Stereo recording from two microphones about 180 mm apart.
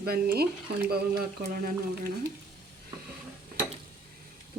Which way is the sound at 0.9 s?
60° right (ahead or behind).